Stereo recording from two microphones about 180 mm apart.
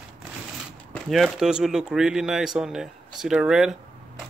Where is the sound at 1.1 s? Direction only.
Centre (ahead or behind).